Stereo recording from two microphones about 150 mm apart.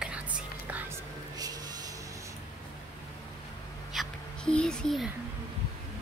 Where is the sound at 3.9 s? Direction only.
Centre (ahead or behind).